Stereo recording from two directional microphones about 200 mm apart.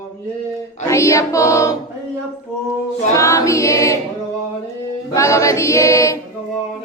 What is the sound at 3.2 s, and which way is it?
Choir, 15° left (ahead or behind).